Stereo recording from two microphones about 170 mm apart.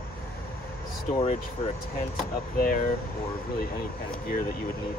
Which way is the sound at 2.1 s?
55° left (ahead or behind).